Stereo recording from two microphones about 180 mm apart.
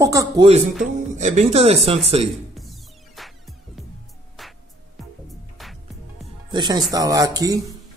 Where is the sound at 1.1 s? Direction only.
40° right (ahead or behind).